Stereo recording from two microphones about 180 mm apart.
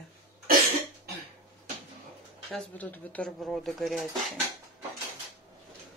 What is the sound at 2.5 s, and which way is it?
A woman's voice, 10° left (ahead or behind).